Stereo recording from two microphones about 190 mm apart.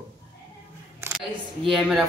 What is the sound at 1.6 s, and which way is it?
Speech, centre (ahead or behind).